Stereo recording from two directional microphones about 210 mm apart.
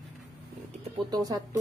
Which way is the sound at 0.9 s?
20° right (ahead or behind).